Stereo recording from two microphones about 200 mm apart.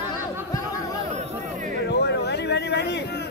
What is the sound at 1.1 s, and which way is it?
Chatter, 40° right (ahead or behind).